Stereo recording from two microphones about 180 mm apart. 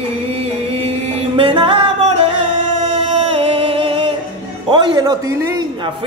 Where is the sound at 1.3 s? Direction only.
30° right (ahead or behind).